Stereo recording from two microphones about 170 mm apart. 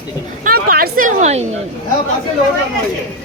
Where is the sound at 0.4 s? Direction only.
60° right (ahead or behind); by 1.5 s 40° right (ahead or behind).